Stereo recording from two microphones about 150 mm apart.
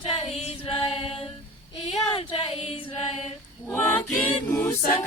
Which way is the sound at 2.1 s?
35° left (ahead or behind).